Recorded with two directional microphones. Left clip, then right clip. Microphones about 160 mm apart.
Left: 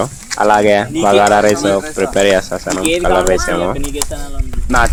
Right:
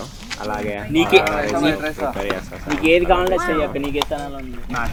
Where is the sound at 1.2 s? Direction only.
65° left (ahead or behind).